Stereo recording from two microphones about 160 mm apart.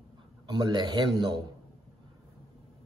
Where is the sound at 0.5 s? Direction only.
25° right (ahead or behind).